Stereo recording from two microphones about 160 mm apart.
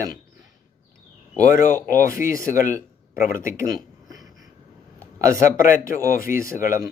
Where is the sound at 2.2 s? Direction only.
15° right (ahead or behind).